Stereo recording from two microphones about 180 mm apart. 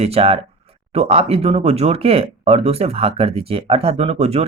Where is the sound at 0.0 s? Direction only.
35° right (ahead or behind).